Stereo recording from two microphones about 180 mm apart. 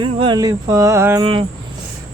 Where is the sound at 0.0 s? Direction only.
25° right (ahead or behind).